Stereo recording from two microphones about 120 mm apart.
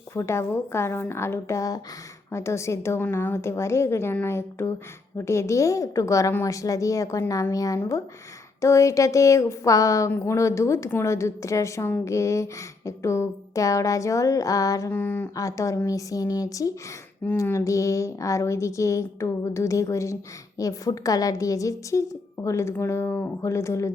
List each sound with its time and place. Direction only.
0.1 s a woman's voice: 20° left (ahead or behind)
14.9 s speech: 15° left (ahead or behind)
15.4 s a woman's voice: 25° left (ahead or behind)